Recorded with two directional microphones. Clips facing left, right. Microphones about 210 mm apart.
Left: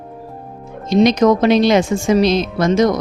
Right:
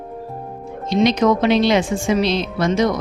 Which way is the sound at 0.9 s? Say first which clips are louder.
Left 4 dB; 45° left (ahead or behind).